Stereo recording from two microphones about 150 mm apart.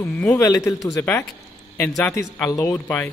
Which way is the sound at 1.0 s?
15° left (ahead or behind).